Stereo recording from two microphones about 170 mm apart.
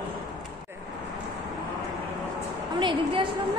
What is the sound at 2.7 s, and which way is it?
Speech, 30° right (ahead or behind).